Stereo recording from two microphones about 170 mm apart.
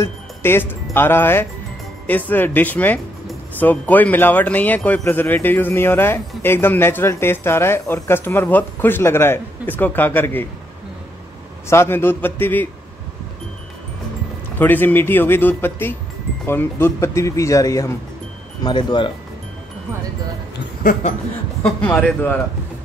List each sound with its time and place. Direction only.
0.0 s speech: 15° left (ahead or behind)
11.7 s speech: 15° left (ahead or behind)
14.6 s speech: 10° left (ahead or behind); by 19.1 s 30° left (ahead or behind)
21.6 s speech: 5° left (ahead or behind)